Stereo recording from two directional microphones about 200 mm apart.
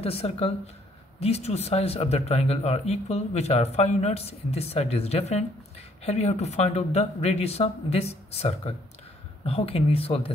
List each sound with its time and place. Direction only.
0.0 s speech: 30° left (ahead or behind)